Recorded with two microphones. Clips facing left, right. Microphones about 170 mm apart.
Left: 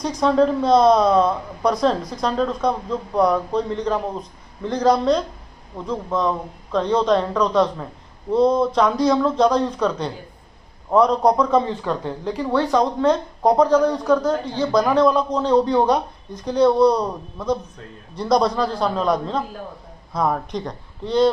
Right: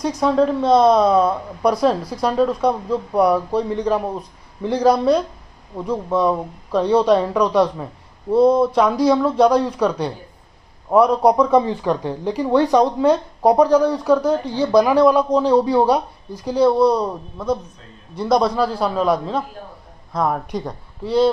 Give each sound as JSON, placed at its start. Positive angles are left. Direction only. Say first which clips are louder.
{"t": 0.0, "sound": "a man's voice", "louder": "even", "side_deg": -5}